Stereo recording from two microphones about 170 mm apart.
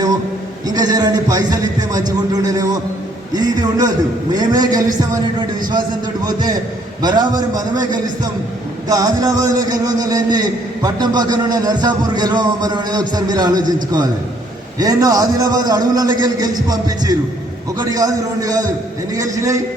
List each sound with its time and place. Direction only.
0.7 s a man's voice: 20° right (ahead or behind)
14.8 s a man's voice: 20° right (ahead or behind)